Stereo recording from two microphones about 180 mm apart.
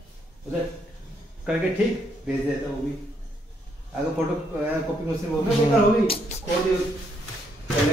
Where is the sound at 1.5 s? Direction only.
5° right (ahead or behind).